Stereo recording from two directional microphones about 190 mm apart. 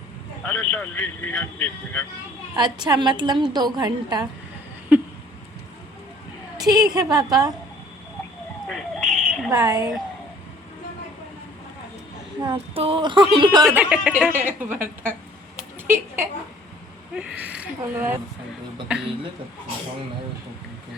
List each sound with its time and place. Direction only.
0.4 s speech: 10° left (ahead or behind)
2.6 s a woman's voice: 20° right (ahead or behind)
4.9 s a sound: 10° right (ahead or behind)
6.6 s a woman's voice: 20° right (ahead or behind)
8.6 s a sound: centre (ahead or behind)
9.5 s a woman's voice: 20° right (ahead or behind)
12.4 s a woman's voice: 25° right (ahead or behind)
13.7 s speech: 5° right (ahead or behind)
15.9 s speech: 10° right (ahead or behind)